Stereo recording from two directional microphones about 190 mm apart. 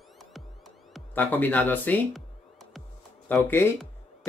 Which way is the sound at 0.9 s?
10° left (ahead or behind).